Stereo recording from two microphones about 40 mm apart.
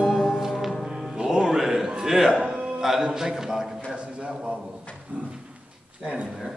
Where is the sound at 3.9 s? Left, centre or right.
Right.